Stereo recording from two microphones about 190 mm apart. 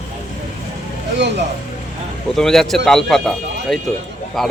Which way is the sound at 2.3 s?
Centre (ahead or behind).